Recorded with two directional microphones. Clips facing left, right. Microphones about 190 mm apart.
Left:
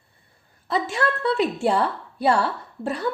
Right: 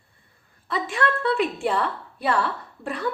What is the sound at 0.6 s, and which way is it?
A woman's voice, 30° left (ahead or behind).